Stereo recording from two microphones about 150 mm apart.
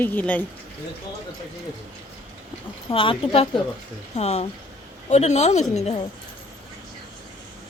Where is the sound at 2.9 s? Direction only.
35° left (ahead or behind).